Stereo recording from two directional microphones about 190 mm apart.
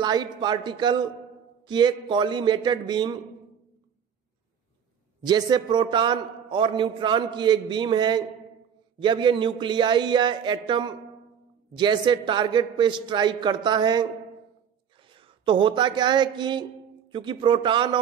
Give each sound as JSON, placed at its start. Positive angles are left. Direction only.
{"t": 0.0, "sound": "a man's voice", "side_deg": -20}
{"t": 5.2, "sound": "a man's voice", "side_deg": -20}